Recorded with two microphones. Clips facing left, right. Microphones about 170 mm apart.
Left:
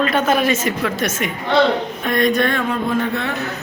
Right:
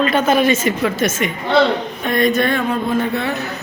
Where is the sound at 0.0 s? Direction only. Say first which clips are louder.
Right 2 dB; centre (ahead or behind).